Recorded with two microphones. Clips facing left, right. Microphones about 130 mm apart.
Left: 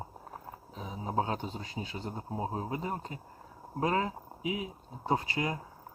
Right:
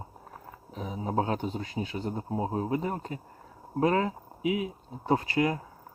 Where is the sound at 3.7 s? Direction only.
25° left (ahead or behind).